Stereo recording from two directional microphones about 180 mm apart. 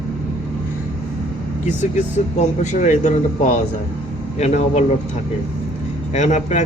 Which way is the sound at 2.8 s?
40° left (ahead or behind).